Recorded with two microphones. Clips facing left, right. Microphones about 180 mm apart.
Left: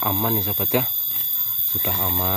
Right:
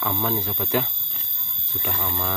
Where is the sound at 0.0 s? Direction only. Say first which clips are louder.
Left 2 dB; 10° left (ahead or behind).